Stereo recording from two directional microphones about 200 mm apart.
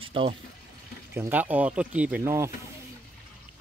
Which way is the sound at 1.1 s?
10° right (ahead or behind).